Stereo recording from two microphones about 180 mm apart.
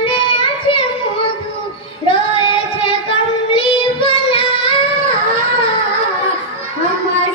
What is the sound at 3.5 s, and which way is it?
Music, 30° left (ahead or behind).